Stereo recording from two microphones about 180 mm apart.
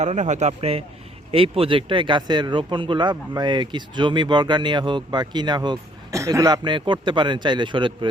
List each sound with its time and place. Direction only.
0.0 s a man's voice: 40° right (ahead or behind)